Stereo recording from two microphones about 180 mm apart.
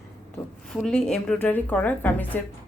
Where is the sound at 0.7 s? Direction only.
Centre (ahead or behind).